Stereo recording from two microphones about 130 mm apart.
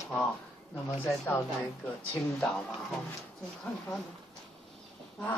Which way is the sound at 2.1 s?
5° left (ahead or behind).